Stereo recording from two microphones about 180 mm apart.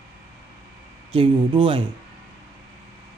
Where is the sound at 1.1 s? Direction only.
30° right (ahead or behind).